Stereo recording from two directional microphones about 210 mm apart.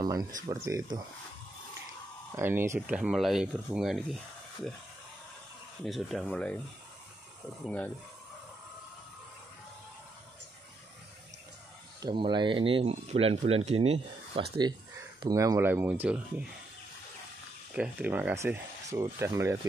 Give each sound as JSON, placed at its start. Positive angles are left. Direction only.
{"t": 0.0, "sound": "speech", "side_deg": -20}
{"t": 2.3, "sound": "speech", "side_deg": -10}
{"t": 5.9, "sound": "speech", "side_deg": 0}
{"t": 7.6, "sound": "speech", "side_deg": 5}
{"t": 12.0, "sound": "speech", "side_deg": -20}
{"t": 15.2, "sound": "speech", "side_deg": -15}
{"t": 17.7, "sound": "speech", "side_deg": -5}